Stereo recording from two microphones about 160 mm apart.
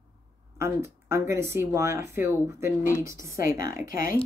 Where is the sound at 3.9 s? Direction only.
60° left (ahead or behind).